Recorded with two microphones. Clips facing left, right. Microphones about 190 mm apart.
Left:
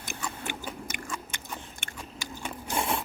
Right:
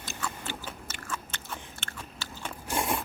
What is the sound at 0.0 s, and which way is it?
Biting, 15° left (ahead or behind).